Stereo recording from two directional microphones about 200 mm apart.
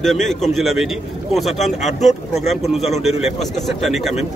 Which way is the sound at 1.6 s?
35° left (ahead or behind).